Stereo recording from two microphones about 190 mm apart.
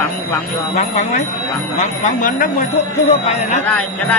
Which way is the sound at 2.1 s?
45° left (ahead or behind).